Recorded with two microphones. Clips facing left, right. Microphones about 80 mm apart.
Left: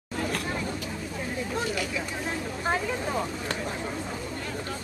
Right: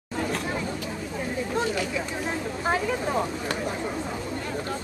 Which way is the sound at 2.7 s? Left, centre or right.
Centre.